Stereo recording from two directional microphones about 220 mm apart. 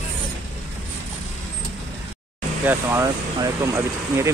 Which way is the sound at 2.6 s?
10° right (ahead or behind).